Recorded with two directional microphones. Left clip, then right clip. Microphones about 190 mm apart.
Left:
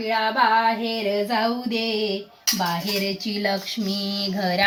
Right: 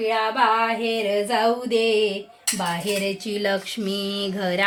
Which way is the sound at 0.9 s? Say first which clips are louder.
Right 1 dB; 15° right (ahead or behind).